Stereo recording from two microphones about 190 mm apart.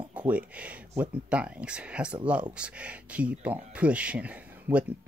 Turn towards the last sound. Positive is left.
turn(degrees=-5)  # may be behind; listen again after turning